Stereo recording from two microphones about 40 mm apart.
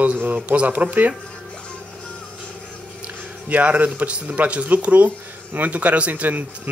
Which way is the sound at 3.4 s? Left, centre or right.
Right.